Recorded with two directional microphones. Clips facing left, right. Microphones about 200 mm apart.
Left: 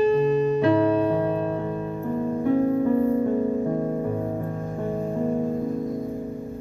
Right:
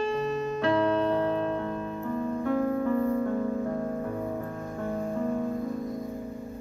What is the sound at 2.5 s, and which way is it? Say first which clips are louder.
Music: left 6 dB; 20° left (ahead or behind).